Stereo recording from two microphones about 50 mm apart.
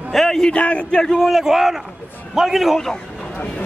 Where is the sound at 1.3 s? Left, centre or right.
Centre.